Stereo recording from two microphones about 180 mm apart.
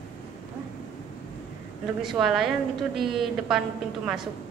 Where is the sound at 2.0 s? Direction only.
Centre (ahead or behind).